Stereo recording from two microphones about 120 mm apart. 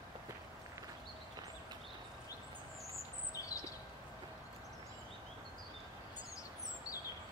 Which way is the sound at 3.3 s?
30° left (ahead or behind).